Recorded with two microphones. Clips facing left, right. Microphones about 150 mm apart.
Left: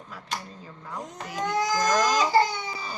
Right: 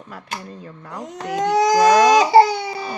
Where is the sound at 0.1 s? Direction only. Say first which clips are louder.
Right 6 dB; 60° right (ahead or behind).